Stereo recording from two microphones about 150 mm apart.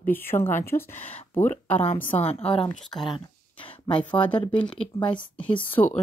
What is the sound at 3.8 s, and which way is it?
Speech, 35° left (ahead or behind).